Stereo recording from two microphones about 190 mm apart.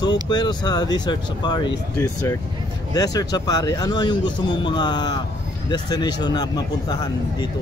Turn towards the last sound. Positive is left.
turn(degrees=20)  # may be behind; listen again after turning